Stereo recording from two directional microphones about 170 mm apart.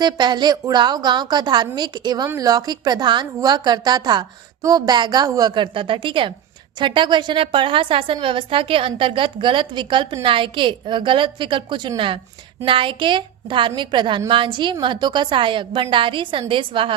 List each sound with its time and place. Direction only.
0.0 s a woman's voice: 25° right (ahead or behind)